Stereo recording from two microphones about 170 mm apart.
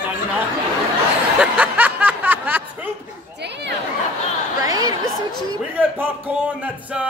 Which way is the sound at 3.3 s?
90° right.